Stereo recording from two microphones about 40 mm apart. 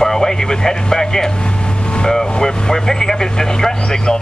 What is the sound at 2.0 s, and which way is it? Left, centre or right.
Speech, centre.